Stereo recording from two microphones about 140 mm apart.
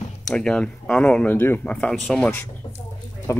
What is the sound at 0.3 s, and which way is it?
Speech, 5° left (ahead or behind).